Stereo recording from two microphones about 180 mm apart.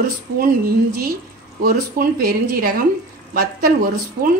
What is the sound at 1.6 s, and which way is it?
Speech, 55° right (ahead or behind).